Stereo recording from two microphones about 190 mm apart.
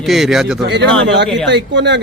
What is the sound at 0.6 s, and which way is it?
A man's voice, 65° right (ahead or behind).